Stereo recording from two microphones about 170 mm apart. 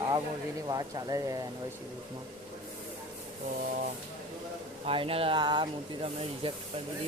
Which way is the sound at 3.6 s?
50° right (ahead or behind).